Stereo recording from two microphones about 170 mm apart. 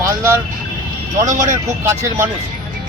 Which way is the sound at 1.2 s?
45° right (ahead or behind).